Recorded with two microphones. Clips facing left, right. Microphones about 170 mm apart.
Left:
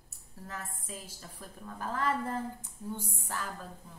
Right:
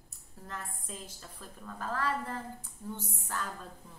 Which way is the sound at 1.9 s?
20° left (ahead or behind).